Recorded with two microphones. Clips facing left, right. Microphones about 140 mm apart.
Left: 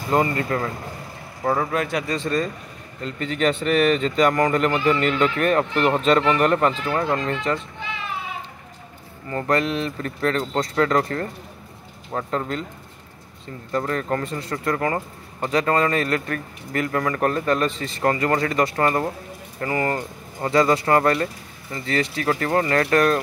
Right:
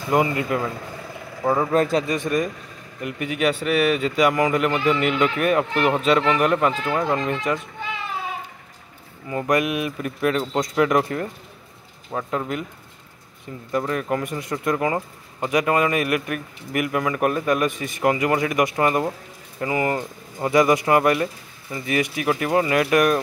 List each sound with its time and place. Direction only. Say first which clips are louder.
0.1 s speech: even; 10° right (ahead or behind)
1.7 s speech: right 5 dB; 35° right (ahead or behind)
2.0 s speech: right 1 dB; 15° right (ahead or behind)
9.3 s speech: right 1 dB; 10° right (ahead or behind)
12.1 s speech: even; 5° right (ahead or behind)
13.7 s speech: even; 10° right (ahead or behind)